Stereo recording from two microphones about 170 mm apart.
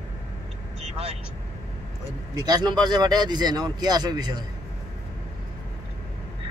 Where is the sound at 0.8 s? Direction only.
35° right (ahead or behind).